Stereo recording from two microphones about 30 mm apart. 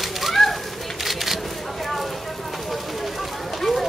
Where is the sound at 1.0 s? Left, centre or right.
Centre.